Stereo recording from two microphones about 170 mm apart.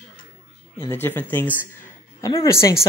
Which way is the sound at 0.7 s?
15° left (ahead or behind).